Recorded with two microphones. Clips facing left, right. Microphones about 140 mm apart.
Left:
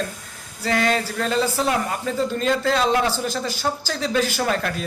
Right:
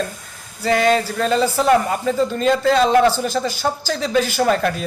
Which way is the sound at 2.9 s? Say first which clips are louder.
Right 7 dB; 55° right (ahead or behind).